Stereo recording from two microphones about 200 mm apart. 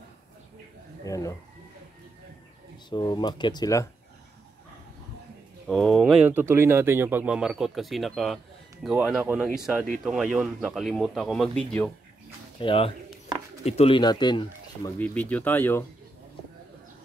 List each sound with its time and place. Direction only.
1.0 s speech: 15° left (ahead or behind)
2.9 s speech: 20° left (ahead or behind)
5.7 s speech: centre (ahead or behind)
12.5 s speech: 25° left (ahead or behind)
15.0 s speech: 5° left (ahead or behind)